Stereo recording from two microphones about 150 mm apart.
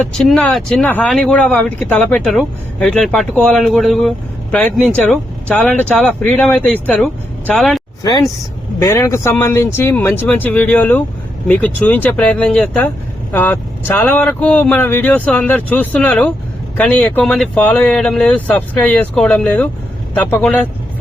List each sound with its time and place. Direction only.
0.2 s speech: centre (ahead or behind)
8.0 s speech: 25° left (ahead or behind); by 20.7 s 10° left (ahead or behind)